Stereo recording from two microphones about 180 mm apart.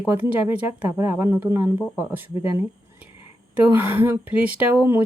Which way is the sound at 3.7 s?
10° right (ahead or behind).